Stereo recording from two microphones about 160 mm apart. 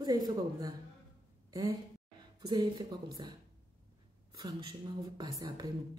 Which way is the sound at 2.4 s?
25° right (ahead or behind).